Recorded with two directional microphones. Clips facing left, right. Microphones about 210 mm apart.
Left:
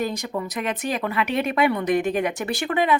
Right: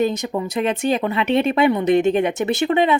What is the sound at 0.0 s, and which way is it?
Speech, 20° right (ahead or behind).